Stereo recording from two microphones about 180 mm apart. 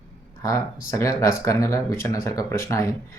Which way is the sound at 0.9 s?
15° left (ahead or behind).